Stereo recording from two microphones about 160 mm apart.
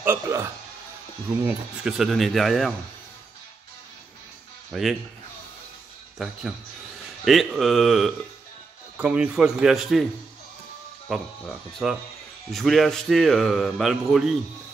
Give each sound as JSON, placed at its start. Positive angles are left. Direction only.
{"t": 0.0, "sound": "speech", "side_deg": -15}
{"t": 1.4, "sound": "speech", "side_deg": 0}
{"t": 4.7, "sound": "speech", "side_deg": 0}
{"t": 6.1, "sound": "speech", "side_deg": -5}
{"t": 11.1, "sound": "speech", "side_deg": 0}